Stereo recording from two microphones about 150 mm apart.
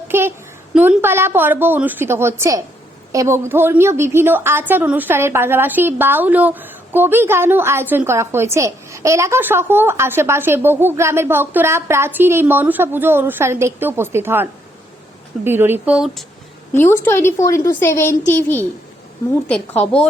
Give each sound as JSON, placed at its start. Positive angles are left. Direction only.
{"t": 0.1, "sound": "a sound", "side_deg": -15}
{"t": 0.7, "sound": "a woman's voice", "side_deg": -10}
{"t": 15.4, "sound": "a woman's voice", "side_deg": -15}
{"t": 16.0, "sound": "speech", "side_deg": 0}
{"t": 16.7, "sound": "speech", "side_deg": 15}